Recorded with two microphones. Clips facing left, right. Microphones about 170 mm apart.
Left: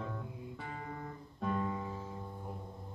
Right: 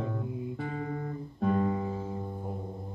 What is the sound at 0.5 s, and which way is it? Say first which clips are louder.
Music: right 9 dB; 55° right (ahead or behind).